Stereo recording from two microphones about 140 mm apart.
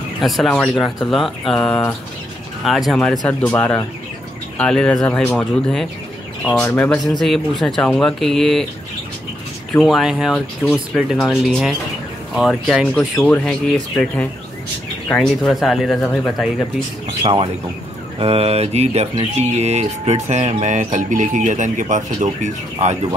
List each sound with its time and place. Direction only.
0.4 s speech: centre (ahead or behind)
5.4 s speech: centre (ahead or behind)
9.8 s speech: centre (ahead or behind)
17.2 s speech: 40° right (ahead or behind)
18.2 s mantra: 45° right (ahead or behind)
19.4 s speech: 50° right (ahead or behind)